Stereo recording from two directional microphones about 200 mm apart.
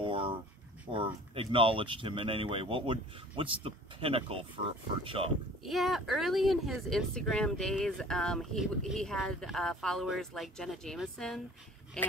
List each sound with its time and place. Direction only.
0.0 s a sound: 25° right (ahead or behind)
0.9 s speech: 25° right (ahead or behind)
5.6 s speech: centre (ahead or behind)